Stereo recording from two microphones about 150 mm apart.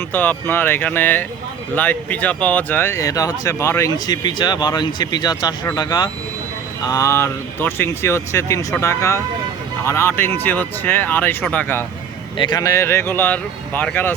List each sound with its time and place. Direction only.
0.1 s speech: 10° left (ahead or behind)
12.4 s speech: 25° left (ahead or behind)